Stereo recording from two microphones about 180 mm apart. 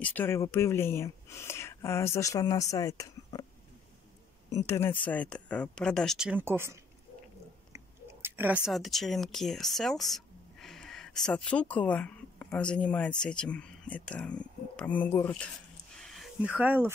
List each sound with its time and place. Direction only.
0.0 s speech: 10° left (ahead or behind)
4.5 s speech: 15° left (ahead or behind); by 6.8 s 15° right (ahead or behind)
7.7 s chewing: 10° right (ahead or behind)
8.6 s speech: centre (ahead or behind)
16.0 s a sound: centre (ahead or behind)